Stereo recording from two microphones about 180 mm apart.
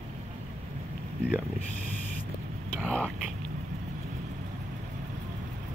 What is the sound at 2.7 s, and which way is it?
Whispering, 5° left (ahead or behind).